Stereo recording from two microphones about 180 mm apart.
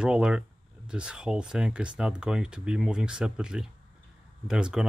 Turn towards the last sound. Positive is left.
turn(degrees=-5)  # may be behind; listen again after turning